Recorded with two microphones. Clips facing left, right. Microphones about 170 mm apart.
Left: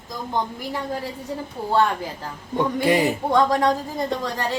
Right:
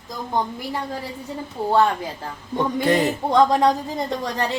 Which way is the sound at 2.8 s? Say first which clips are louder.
Even; 10° left (ahead or behind).